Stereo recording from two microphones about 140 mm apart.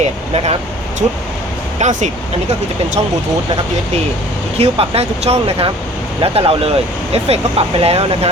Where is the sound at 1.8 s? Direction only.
60° right (ahead or behind).